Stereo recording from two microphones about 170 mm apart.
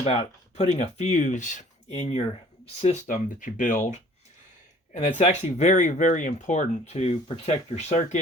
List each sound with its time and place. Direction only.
0.0 s speech: 40° left (ahead or behind)
5.1 s speech: 45° left (ahead or behind)